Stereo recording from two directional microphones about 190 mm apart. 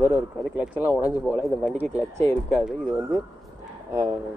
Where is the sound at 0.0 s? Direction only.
10° right (ahead or behind).